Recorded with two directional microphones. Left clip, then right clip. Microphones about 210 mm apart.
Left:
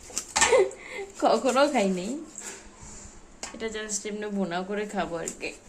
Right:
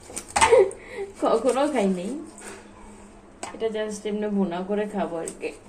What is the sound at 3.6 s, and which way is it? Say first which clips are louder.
Speech: right 6 dB; 40° left (ahead or behind).